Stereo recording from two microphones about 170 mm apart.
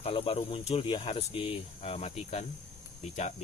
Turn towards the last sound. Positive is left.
turn(degrees=45)  # may be behind; listen again after turning